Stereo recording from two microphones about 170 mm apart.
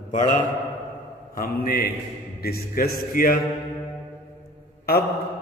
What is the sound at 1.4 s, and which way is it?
A man's voice, 60° left (ahead or behind).